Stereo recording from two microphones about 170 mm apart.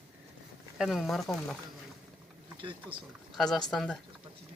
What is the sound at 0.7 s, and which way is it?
Speech, centre (ahead or behind).